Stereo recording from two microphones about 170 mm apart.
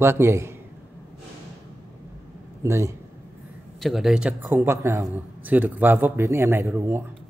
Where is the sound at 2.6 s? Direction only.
15° right (ahead or behind).